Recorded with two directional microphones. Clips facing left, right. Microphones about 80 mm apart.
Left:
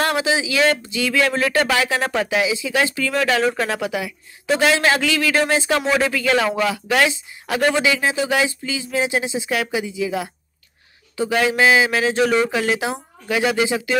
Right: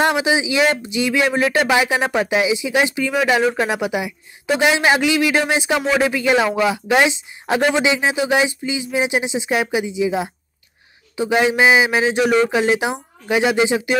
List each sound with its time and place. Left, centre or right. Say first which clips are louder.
0.0 s speech: right 3 dB; centre
5.8 s speech: right 1 dB; centre
6.0 s speech: right 2 dB; centre